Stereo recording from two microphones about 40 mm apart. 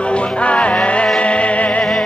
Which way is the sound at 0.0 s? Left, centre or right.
Left.